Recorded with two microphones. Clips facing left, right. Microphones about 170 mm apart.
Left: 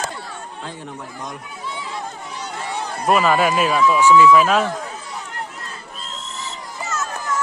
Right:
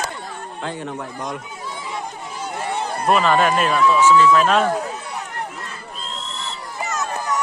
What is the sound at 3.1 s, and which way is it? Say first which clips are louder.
Speech: even; 5° left (ahead or behind).